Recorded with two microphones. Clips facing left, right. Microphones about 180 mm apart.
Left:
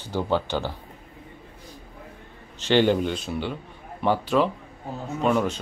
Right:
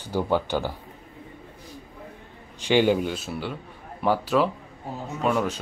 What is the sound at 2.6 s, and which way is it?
A man's voice, 10° right (ahead or behind).